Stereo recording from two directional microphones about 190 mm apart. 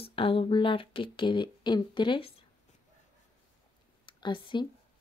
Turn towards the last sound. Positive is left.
turn(degrees=25)  # may be behind; listen again after turning